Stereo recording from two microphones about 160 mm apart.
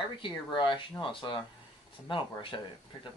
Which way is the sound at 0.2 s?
30° left (ahead or behind).